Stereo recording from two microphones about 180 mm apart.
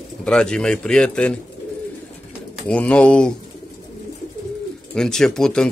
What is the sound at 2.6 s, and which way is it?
Speech, 5° left (ahead or behind).